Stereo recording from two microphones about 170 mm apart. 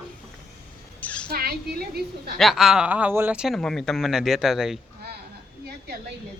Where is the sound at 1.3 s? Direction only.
65° right (ahead or behind).